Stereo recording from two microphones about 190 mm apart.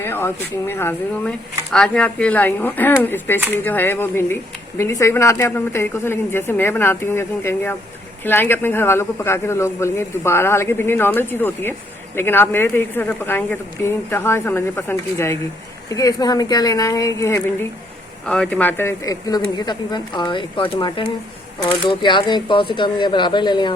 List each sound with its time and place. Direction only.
0.0 s a man's voice: 10° left (ahead or behind)